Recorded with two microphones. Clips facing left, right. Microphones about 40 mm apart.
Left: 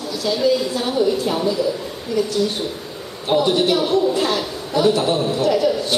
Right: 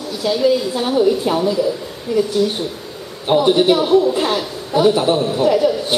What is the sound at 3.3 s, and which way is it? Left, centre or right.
A woman's voice, centre.